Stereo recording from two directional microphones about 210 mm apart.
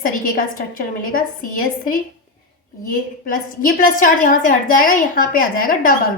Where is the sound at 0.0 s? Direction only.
40° left (ahead or behind).